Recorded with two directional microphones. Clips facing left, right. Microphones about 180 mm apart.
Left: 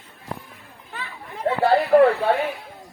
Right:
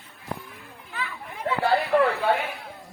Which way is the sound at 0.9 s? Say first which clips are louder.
Even; 40° left (ahead or behind).